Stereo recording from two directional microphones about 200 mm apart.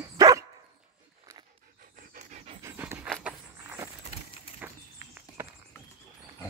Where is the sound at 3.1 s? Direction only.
5° right (ahead or behind).